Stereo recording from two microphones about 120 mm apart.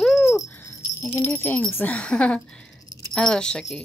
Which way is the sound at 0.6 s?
20° left (ahead or behind).